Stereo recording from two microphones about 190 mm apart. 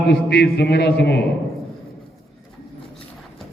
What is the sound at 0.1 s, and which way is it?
Mantra, 60° left (ahead or behind).